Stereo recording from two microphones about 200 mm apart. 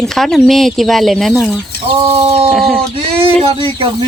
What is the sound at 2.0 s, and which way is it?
Chicken, 25° right (ahead or behind).